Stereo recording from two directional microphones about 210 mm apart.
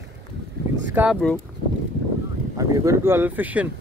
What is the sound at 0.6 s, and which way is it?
Boat, 50° right (ahead or behind).